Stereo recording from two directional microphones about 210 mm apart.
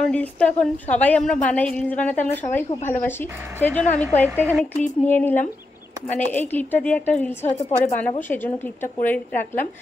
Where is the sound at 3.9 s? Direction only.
35° left (ahead or behind).